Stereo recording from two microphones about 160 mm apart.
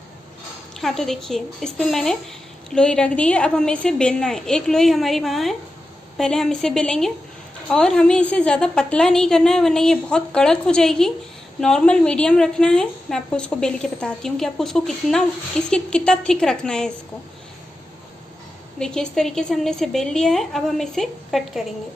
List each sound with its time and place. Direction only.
0.7 s a woman's voice: centre (ahead or behind)
18.8 s a woman's voice: 5° left (ahead or behind)